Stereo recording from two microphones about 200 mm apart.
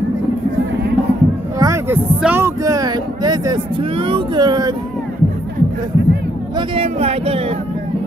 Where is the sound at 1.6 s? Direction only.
15° right (ahead or behind).